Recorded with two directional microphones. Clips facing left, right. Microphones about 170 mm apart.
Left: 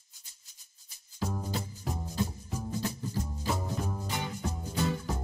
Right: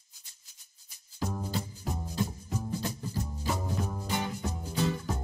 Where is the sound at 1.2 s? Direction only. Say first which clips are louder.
Right 1 dB; centre (ahead or behind).